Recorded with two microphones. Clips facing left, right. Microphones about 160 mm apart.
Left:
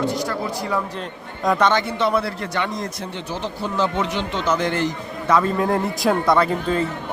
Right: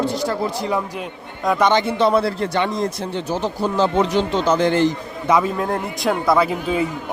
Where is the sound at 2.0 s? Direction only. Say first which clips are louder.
Right 4 dB; 30° right (ahead or behind).